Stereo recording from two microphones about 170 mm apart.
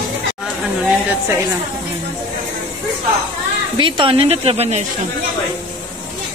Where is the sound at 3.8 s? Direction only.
30° right (ahead or behind).